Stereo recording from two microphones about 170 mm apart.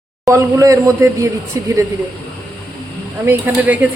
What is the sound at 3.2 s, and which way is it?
Speech, 10° right (ahead or behind).